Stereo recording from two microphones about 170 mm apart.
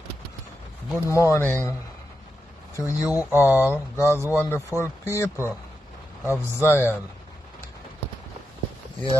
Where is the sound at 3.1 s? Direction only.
10° right (ahead or behind).